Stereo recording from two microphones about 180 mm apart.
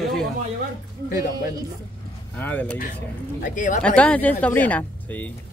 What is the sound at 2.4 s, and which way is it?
Speech, 10° left (ahead or behind).